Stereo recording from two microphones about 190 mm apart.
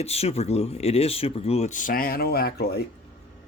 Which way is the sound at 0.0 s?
35° left (ahead or behind).